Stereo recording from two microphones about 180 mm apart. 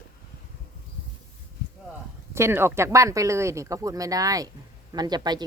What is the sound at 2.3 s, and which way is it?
Speech, 15° right (ahead or behind).